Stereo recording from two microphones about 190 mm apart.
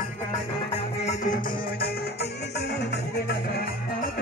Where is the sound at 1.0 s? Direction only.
35° left (ahead or behind).